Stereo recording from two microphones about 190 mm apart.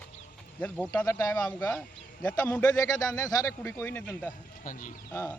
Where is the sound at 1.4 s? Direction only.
5° left (ahead or behind).